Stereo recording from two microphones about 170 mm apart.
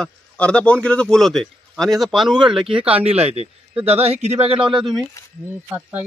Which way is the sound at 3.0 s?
35° right (ahead or behind).